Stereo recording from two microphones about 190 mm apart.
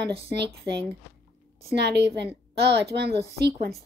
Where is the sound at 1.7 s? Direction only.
60° right (ahead or behind).